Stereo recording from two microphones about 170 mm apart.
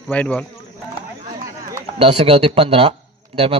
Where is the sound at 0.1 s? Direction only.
10° left (ahead or behind).